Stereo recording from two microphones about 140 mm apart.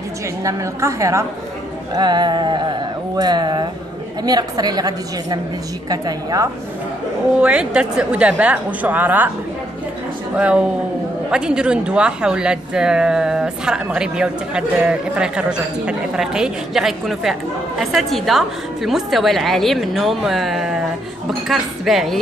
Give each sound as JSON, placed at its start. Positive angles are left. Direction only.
{"t": 0.4, "sound": "a woman's voice", "side_deg": -25}
{"t": 2.0, "sound": "a sound", "side_deg": -30}
{"t": 4.2, "sound": "a woman's voice", "side_deg": -30}
{"t": 7.3, "sound": "a woman's voice", "side_deg": -5}
{"t": 10.3, "sound": "a woman's voice", "side_deg": -5}